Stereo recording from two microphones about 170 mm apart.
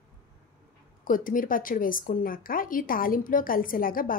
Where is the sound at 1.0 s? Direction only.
55° left (ahead or behind).